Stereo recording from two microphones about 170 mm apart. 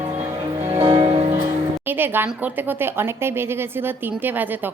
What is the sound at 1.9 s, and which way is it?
Speech, 10° right (ahead or behind).